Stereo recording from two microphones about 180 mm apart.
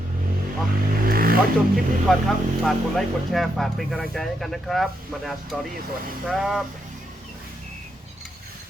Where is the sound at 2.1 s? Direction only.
Centre (ahead or behind).